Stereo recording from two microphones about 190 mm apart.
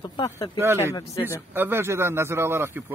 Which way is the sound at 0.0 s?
25° left (ahead or behind).